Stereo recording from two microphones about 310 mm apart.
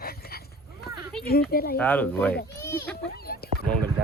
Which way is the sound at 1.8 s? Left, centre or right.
Centre.